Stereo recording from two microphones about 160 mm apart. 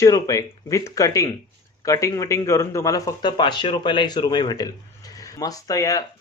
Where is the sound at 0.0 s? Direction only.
20° left (ahead or behind).